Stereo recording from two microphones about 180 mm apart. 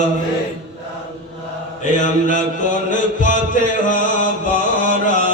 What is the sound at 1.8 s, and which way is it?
Mantra, 45° left (ahead or behind).